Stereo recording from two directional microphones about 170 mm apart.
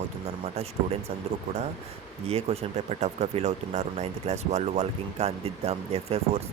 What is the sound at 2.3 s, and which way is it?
Speech, 40° right (ahead or behind).